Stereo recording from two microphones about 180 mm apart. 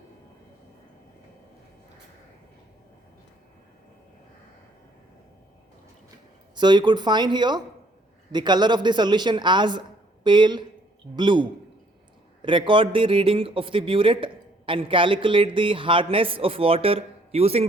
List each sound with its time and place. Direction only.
6.6 s a man's voice: 25° right (ahead or behind)